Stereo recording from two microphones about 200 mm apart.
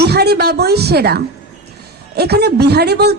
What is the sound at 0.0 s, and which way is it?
A woman's voice, 55° right (ahead or behind).